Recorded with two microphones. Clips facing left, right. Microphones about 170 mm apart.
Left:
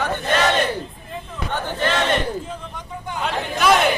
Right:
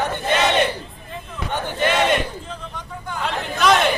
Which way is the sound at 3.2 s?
Centre (ahead or behind).